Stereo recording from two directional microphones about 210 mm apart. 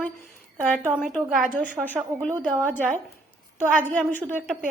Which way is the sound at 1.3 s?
40° right (ahead or behind).